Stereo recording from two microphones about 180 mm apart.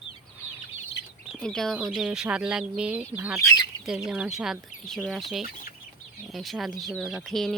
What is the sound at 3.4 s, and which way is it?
Speech, 20° left (ahead or behind).